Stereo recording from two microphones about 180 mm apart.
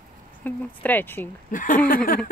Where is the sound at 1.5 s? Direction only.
50° left (ahead or behind).